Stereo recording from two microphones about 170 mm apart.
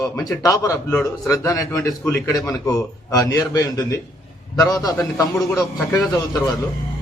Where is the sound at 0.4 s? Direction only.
20° left (ahead or behind).